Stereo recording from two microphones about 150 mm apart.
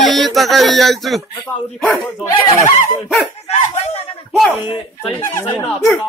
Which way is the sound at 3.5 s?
45° left (ahead or behind).